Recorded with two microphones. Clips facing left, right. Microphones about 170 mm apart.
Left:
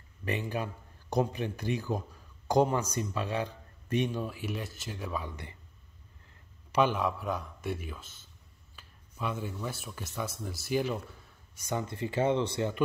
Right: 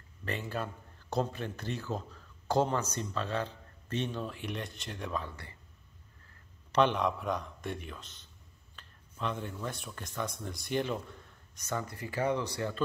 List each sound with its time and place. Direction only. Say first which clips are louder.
0.2 s a man's voice: left 3 dB; 15° left (ahead or behind)
5.3 s speech: left 4 dB; 20° left (ahead or behind)
6.7 s a man's voice: even; 5° left (ahead or behind)
11.7 s speech: left 4 dB; 25° left (ahead or behind)